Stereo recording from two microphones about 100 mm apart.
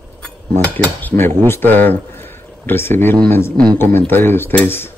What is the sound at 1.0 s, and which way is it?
Speech, 20° left (ahead or behind).